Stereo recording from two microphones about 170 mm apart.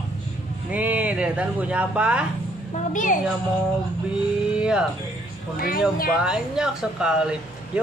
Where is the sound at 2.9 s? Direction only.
50° left (ahead or behind).